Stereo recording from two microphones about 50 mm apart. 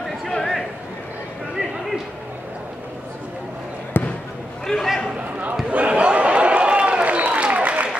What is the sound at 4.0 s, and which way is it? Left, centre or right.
Basketball bounce, left.